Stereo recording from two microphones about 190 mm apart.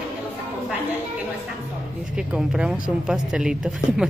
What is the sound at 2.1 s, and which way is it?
Speech, 5° right (ahead or behind).